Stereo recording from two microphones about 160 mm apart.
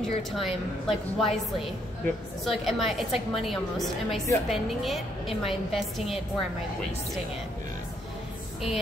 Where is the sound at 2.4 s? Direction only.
Centre (ahead or behind).